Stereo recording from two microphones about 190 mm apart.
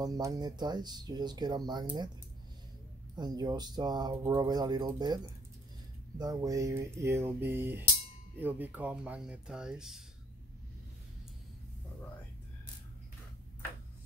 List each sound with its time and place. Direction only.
0.0 s speech: 20° right (ahead or behind)
3.2 s speech: 20° right (ahead or behind); by 10.0 s 5° right (ahead or behind)